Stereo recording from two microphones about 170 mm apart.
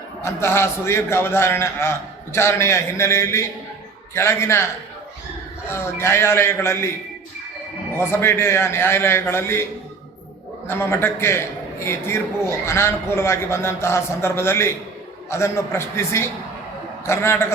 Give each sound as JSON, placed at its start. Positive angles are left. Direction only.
{"t": 0.2, "sound": "a man's voice", "side_deg": 15}
{"t": 7.9, "sound": "a man's voice", "side_deg": 15}
{"t": 10.7, "sound": "a man's voice", "side_deg": 15}